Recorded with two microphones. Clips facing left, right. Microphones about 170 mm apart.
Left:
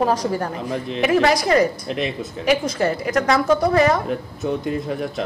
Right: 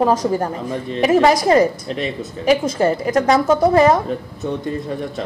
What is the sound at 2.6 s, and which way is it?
A woman's voice, 45° right (ahead or behind).